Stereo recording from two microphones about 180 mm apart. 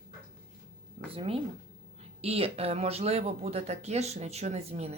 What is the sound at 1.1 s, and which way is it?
Speech, 30° right (ahead or behind).